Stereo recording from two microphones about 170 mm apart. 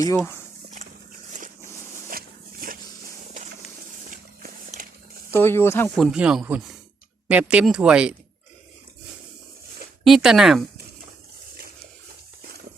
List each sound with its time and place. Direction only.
2.0 s a sound: 60° right (ahead or behind)
4.1 s horse: 50° right (ahead or behind)
5.3 s speech: 15° left (ahead or behind)
6.0 s speech: 5° right (ahead or behind)
10.0 s speech: centre (ahead or behind)